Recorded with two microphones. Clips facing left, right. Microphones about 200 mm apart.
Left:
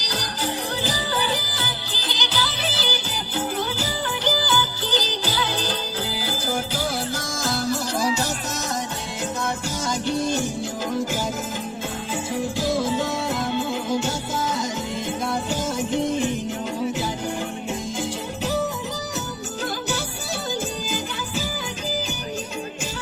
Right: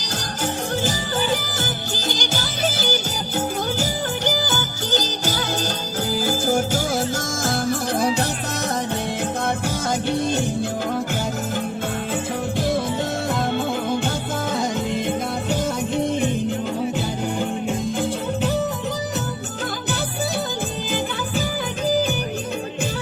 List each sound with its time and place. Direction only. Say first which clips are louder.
0.0 s music: right 1 dB; 50° right (ahead or behind)
9.4 s music: right 3 dB; 55° right (ahead or behind)
12.5 s music: right 1 dB; 60° right (ahead or behind)